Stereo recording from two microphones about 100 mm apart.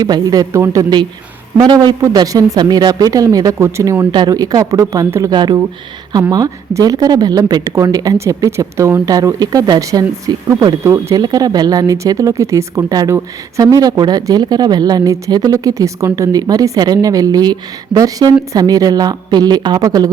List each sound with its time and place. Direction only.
0.0 s speech: 40° right (ahead or behind)
1.6 s a man's voice: 50° right (ahead or behind)
2.1 s speech: 35° right (ahead or behind)
4.1 s speech: 45° right (ahead or behind); by 9.0 s 25° right (ahead or behind)
9.0 s speech: 40° right (ahead or behind)